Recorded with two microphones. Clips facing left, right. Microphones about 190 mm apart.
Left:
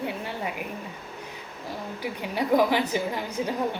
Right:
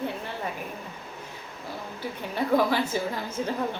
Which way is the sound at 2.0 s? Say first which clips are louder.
Left 1 dB; 15° left (ahead or behind).